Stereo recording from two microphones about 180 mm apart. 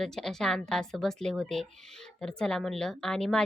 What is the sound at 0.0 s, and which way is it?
A woman's voice, centre (ahead or behind).